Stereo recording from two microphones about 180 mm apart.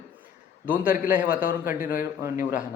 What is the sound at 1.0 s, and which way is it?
Speech, 10° right (ahead or behind).